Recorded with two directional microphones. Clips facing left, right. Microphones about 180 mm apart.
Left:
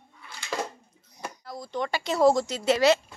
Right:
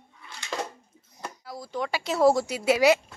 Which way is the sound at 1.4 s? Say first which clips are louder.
Even; 5° right (ahead or behind).